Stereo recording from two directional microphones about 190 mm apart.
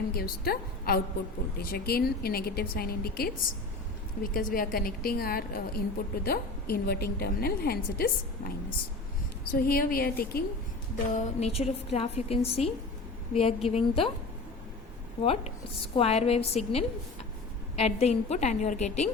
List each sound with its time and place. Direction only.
0.1 s a woman's voice: 55° left (ahead or behind)
9.6 s a woman's voice: 50° left (ahead or behind)
11.1 s a woman's voice: 35° left (ahead or behind)
15.2 s a woman's voice: 30° left (ahead or behind)